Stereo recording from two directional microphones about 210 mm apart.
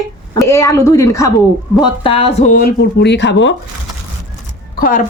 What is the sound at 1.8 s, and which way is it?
Speech, 25° left (ahead or behind).